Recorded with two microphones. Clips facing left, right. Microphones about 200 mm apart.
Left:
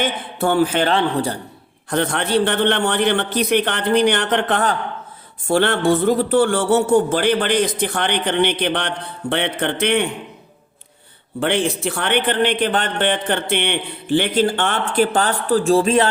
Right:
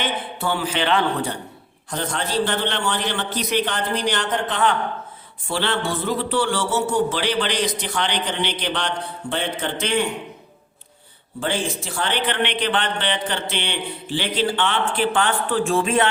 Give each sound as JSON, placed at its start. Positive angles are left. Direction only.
{"t": 0.0, "sound": "a man's voice", "side_deg": 50}
{"t": 0.9, "sound": "a man's voice", "side_deg": 35}
{"t": 1.9, "sound": "a man's voice", "side_deg": 65}
{"t": 5.5, "sound": "a man's voice", "side_deg": 50}
{"t": 11.3, "sound": "a man's voice", "side_deg": 65}
{"t": 12.3, "sound": "a man's voice", "side_deg": 45}